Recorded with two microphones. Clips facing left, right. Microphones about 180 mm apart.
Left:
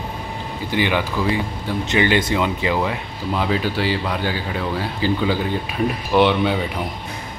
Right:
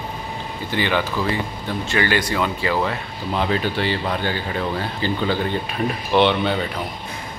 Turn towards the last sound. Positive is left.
turn(degrees=10)  # may be behind; listen again after turning